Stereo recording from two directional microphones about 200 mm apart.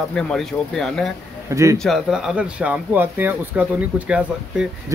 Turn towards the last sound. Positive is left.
turn(degrees=-5)  # may be behind; listen again after turning